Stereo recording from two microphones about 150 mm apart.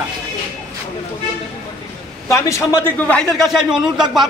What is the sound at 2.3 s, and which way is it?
A man's voice, 20° left (ahead or behind).